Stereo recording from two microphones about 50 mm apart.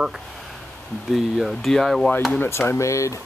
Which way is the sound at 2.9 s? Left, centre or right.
Left.